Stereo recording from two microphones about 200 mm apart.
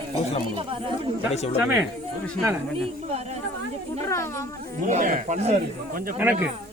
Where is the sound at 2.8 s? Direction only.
30° right (ahead or behind).